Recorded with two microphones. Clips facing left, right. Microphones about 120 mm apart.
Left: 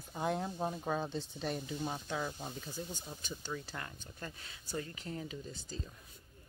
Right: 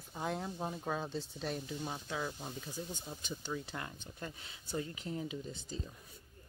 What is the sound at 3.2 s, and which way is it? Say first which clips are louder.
Speech: right 2 dB; 20° right (ahead or behind).